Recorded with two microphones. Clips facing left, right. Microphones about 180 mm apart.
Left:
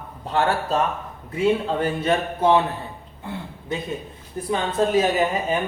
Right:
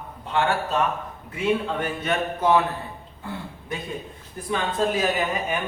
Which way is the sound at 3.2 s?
20° left (ahead or behind).